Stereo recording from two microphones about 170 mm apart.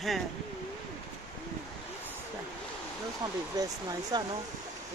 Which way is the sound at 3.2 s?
25° right (ahead or behind).